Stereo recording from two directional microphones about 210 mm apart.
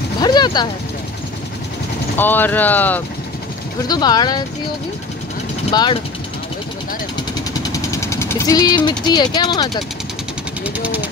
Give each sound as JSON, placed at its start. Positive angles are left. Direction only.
{"t": 0.2, "sound": "speech", "side_deg": 20}
{"t": 2.1, "sound": "speech", "side_deg": 10}
{"t": 3.8, "sound": "speech", "side_deg": 20}
{"t": 5.7, "sound": "speech", "side_deg": 20}
{"t": 7.7, "sound": "speech", "side_deg": 15}
{"t": 10.6, "sound": "speech", "side_deg": -5}